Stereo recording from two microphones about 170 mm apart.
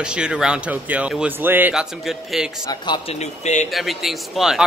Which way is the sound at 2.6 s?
25° left (ahead or behind).